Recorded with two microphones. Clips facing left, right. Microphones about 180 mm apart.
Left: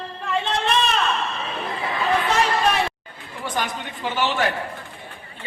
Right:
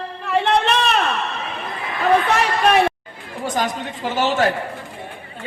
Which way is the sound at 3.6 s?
40° right (ahead or behind).